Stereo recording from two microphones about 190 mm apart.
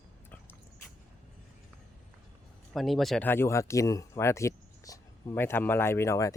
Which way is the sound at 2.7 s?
Centre (ahead or behind).